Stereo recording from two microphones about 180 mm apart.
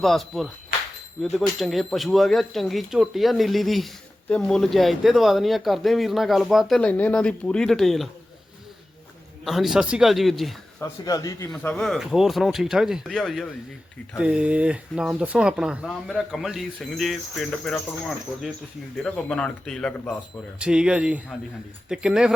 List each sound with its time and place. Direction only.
0.0 s speech: centre (ahead or behind)
9.4 s speech: centre (ahead or behind)
10.8 s speech: 20° left (ahead or behind)
11.5 s speech: 5° left (ahead or behind)